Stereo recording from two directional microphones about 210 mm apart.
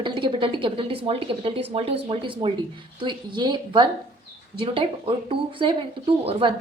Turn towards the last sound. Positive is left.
turn(degrees=-25)  # may be behind; listen again after turning